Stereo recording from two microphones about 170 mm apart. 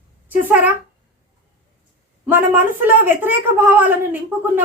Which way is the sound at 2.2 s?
10° right (ahead or behind).